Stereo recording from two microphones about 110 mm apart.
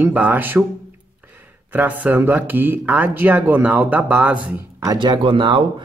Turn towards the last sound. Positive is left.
turn(degrees=-45)  # may be behind; listen again after turning